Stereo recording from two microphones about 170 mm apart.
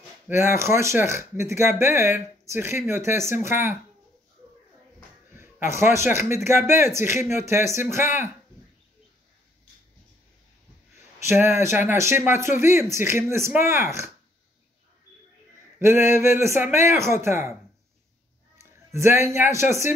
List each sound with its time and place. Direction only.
0.3 s speech: 15° right (ahead or behind)
5.3 s a sound: 15° right (ahead or behind)
6.2 s speech: 15° right (ahead or behind)
11.1 s speech: 15° right (ahead or behind)
15.8 s speech: 15° right (ahead or behind)
18.6 s a man's voice: 15° right (ahead or behind)